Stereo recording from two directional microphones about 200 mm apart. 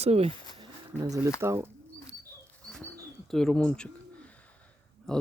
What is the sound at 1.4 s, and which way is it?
Speech, 15° right (ahead or behind).